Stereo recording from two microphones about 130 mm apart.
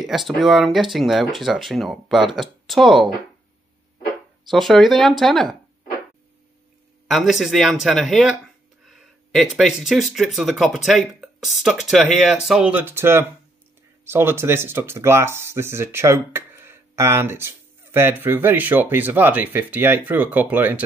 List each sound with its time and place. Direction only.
0.0 s speech: centre (ahead or behind)
4.5 s speech: centre (ahead or behind)
7.1 s speech: centre (ahead or behind)